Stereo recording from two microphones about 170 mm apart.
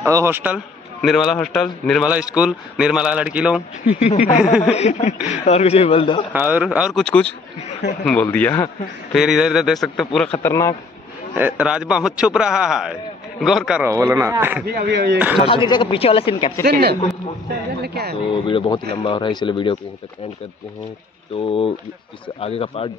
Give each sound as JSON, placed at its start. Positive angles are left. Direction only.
{"t": 0.0, "sound": "speech", "side_deg": -15}
{"t": 1.0, "sound": "a man's voice", "side_deg": 0}
{"t": 4.7, "sound": "speech", "side_deg": 40}
{"t": 6.3, "sound": "a man's voice", "side_deg": -10}
{"t": 9.1, "sound": "a man's voice", "side_deg": 0}
{"t": 10.4, "sound": "speech", "side_deg": 15}
{"t": 11.3, "sound": "a man's voice", "side_deg": -10}
{"t": 13.8, "sound": "speech", "side_deg": -15}
{"t": 14.7, "sound": "speech", "side_deg": -75}
{"t": 15.4, "sound": "speech", "side_deg": 30}
{"t": 16.6, "sound": "a man's voice", "side_deg": -65}
{"t": 18.2, "sound": "speech", "side_deg": 30}
{"t": 21.5, "sound": "speech", "side_deg": 30}